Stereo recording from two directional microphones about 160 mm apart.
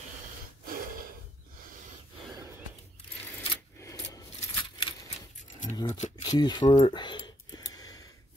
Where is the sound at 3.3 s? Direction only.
20° left (ahead or behind).